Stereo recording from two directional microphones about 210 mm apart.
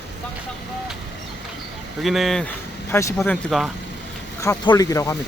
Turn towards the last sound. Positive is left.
turn(degrees=15)  # may be behind; listen again after turning